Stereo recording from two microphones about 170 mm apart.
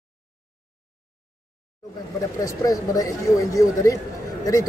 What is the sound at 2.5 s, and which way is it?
A man's voice, 20° left (ahead or behind).